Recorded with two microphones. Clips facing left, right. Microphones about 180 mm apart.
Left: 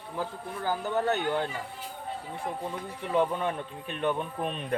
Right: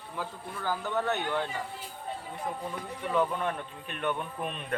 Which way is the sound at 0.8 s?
35° left (ahead or behind).